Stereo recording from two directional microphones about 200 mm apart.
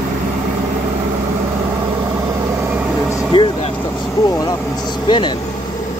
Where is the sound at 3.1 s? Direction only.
20° left (ahead or behind).